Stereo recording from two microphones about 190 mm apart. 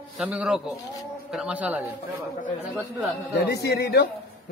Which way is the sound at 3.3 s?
55° left (ahead or behind).